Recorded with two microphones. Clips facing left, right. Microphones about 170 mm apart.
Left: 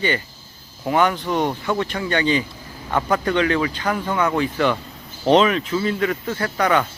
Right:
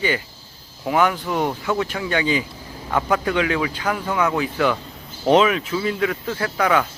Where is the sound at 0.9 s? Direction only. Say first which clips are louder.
Left 1 dB; 5° right (ahead or behind).